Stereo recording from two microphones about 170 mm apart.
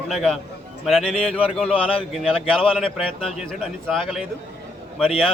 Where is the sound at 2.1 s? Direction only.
Centre (ahead or behind).